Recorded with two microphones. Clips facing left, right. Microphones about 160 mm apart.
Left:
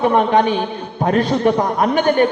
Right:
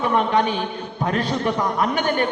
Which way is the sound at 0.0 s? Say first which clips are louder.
Left 5 dB; 45° left (ahead or behind).